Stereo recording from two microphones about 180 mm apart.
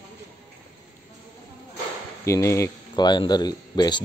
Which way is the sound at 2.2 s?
15° left (ahead or behind).